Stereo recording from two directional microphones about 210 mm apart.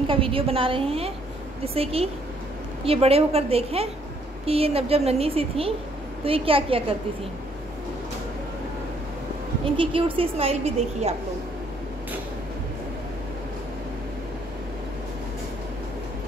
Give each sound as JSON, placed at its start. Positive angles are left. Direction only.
{"t": 0.0, "sound": "a woman's voice", "side_deg": -25}
{"t": 9.8, "sound": "a woman's voice", "side_deg": -25}